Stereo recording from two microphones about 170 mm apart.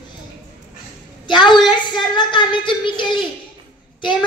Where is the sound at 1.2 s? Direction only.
25° left (ahead or behind).